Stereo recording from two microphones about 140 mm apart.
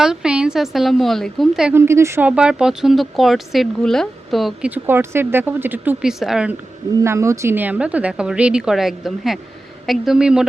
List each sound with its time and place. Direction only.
0.0 s speech: 5° right (ahead or behind)
1.7 s speech: 20° right (ahead or behind); by 4.7 s centre (ahead or behind)
4.7 s a woman's voice: 15° right (ahead or behind)
7.0 s a woman's voice: 20° right (ahead or behind)